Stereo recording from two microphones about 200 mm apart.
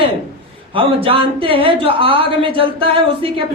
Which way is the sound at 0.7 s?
25° right (ahead or behind).